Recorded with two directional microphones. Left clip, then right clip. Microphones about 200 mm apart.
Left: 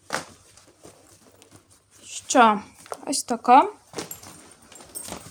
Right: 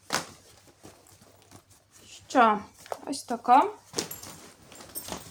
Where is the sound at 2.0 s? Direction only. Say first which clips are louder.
Left 5 dB; 50° left (ahead or behind).